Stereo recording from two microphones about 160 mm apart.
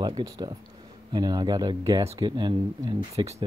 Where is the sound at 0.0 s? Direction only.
25° right (ahead or behind).